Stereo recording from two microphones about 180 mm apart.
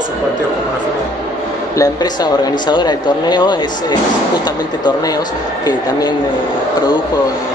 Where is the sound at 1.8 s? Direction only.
25° left (ahead or behind).